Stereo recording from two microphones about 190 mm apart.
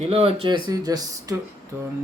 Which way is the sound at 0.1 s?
30° right (ahead or behind).